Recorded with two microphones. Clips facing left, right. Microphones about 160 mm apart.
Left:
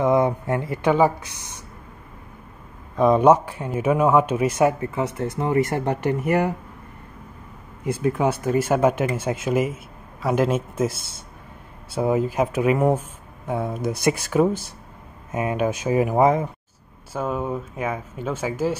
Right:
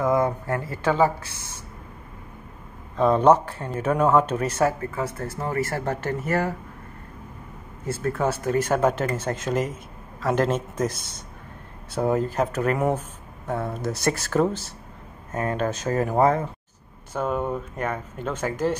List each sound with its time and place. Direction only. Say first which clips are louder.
0.0 s a man's voice: left 3 dB; 20° left (ahead or behind)
3.0 s a man's voice: left 2 dB; 10° left (ahead or behind)
7.8 s a man's voice: left 3 dB; 15° left (ahead or behind)